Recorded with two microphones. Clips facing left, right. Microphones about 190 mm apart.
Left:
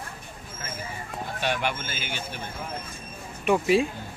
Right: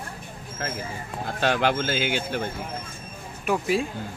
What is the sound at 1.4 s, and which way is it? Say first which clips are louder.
Speech: right 6 dB; 90° right.